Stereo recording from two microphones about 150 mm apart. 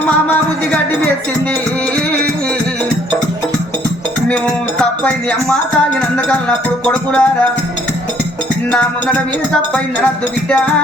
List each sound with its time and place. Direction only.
0.3 s music: 10° left (ahead or behind)
4.8 s speech: 5° left (ahead or behind)
6.8 s music: 5° left (ahead or behind)
8.7 s music: 10° left (ahead or behind)